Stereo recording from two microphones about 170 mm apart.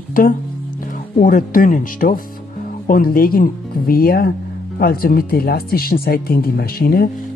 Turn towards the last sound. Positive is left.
turn(degrees=60)  # may be behind; listen again after turning